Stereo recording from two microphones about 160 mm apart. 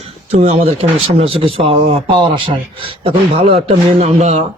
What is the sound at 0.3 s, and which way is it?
A man's voice, 40° right (ahead or behind).